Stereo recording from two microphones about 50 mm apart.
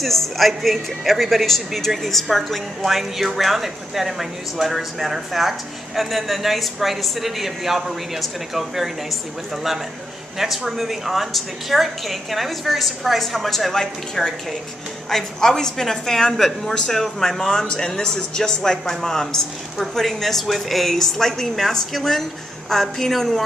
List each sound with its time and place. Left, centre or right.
0.0 s a woman's voice: centre